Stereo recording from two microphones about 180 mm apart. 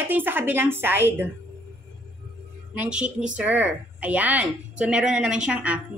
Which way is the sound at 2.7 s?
5° right (ahead or behind).